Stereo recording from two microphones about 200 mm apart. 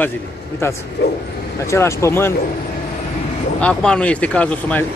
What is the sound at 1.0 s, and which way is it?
Speech, 55° left (ahead or behind).